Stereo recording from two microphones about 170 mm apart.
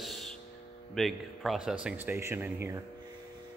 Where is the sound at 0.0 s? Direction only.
Centre (ahead or behind).